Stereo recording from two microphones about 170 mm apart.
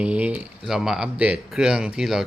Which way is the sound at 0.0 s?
10° right (ahead or behind).